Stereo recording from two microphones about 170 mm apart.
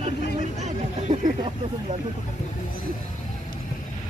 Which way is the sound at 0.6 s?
45° right (ahead or behind).